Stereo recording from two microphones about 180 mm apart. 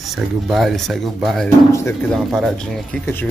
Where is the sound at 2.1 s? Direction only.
Centre (ahead or behind).